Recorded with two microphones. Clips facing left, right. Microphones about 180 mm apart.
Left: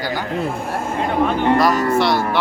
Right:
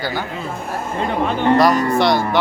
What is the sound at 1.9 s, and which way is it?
Speech, 5° left (ahead or behind).